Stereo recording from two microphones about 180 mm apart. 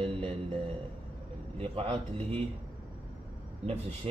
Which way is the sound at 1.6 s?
30° right (ahead or behind).